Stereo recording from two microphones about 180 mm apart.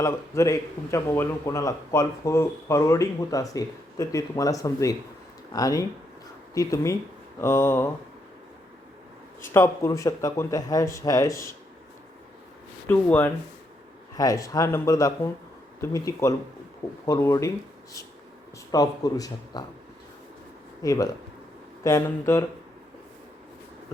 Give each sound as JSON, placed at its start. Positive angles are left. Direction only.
{"t": 0.0, "sound": "speech", "side_deg": 15}
{"t": 9.4, "sound": "speech", "side_deg": 15}
{"t": 12.9, "sound": "speech", "side_deg": 10}
{"t": 18.7, "sound": "speech", "side_deg": 20}
{"t": 20.8, "sound": "speech", "side_deg": 20}